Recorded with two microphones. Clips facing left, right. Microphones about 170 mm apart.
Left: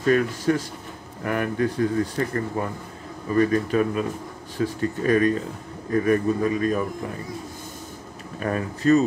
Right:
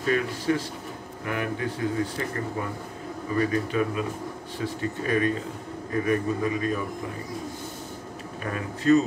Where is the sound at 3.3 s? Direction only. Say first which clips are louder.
Left 5 dB; 45° left (ahead or behind).